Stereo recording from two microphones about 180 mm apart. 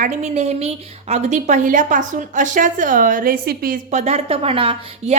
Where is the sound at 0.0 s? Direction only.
40° right (ahead or behind).